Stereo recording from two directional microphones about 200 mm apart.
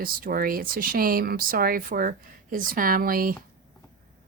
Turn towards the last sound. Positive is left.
turn(degrees=-45)  # may be behind; listen again after turning